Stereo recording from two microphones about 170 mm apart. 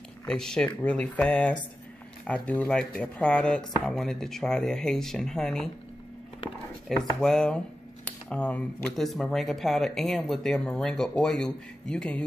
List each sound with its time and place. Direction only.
0.3 s speech: 5° left (ahead or behind)
7.0 s speech: 5° left (ahead or behind)